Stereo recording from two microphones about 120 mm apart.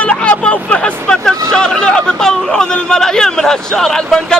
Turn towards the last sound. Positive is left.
turn(degrees=5)  # may be behind; listen again after turning